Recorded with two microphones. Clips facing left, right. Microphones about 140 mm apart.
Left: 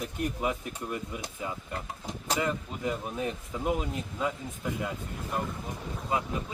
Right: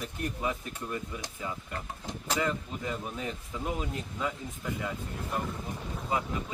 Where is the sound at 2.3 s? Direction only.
15° left (ahead or behind).